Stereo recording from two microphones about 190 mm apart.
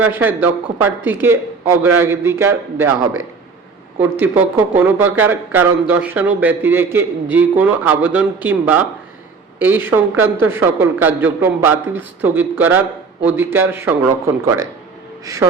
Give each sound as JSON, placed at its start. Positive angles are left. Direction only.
{"t": 0.0, "sound": "a man's voice", "side_deg": -10}